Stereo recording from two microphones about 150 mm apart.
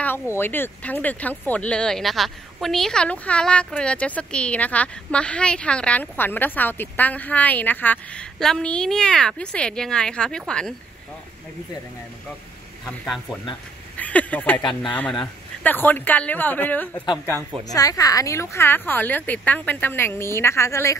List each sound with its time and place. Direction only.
0.0 s speech: 15° left (ahead or behind)
12.9 s speech: 5° left (ahead or behind)
13.9 s a sound: 10° left (ahead or behind)
14.7 s speech: 5° left (ahead or behind)
17.7 s speech: 25° left (ahead or behind)